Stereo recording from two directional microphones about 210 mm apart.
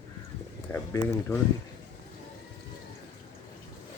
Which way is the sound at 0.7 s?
10° left (ahead or behind).